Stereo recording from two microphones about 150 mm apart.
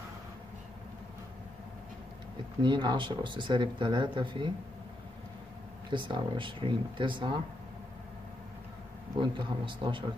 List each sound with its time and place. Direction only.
2.6 s speech: 30° right (ahead or behind)
5.9 s speech: 30° right (ahead or behind)
9.2 s speech: 30° right (ahead or behind)